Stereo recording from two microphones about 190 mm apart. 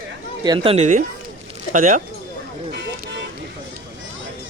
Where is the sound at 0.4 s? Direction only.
25° right (ahead or behind); by 2.0 s 45° right (ahead or behind).